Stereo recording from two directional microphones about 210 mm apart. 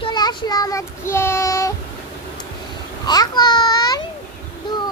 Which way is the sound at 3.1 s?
20° left (ahead or behind).